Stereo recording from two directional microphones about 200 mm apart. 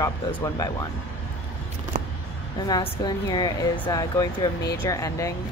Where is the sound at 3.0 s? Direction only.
20° left (ahead or behind).